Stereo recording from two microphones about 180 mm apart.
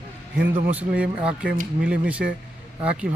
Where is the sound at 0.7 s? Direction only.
10° right (ahead or behind).